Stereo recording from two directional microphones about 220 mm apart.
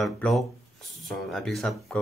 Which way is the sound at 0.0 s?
Centre (ahead or behind).